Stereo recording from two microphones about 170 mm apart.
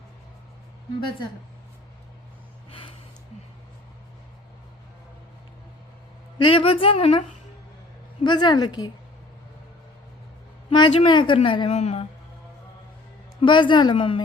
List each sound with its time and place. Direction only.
6.4 s a woman's voice: 30° left (ahead or behind)
10.8 s a woman's voice: 25° left (ahead or behind)
13.4 s a woman's voice: 30° left (ahead or behind)